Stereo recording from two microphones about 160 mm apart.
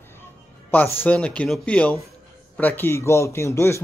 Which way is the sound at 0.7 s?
10° left (ahead or behind).